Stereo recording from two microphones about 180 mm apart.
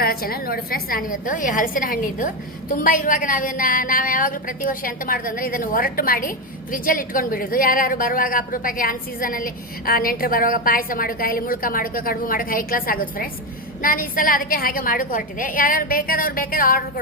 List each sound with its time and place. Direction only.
0.0 s a woman's voice: 55° left (ahead or behind)